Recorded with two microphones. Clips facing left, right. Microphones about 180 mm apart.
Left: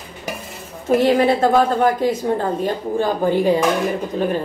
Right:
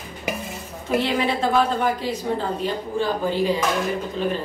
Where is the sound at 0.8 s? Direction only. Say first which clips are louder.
Left 7 dB; 45° left (ahead or behind).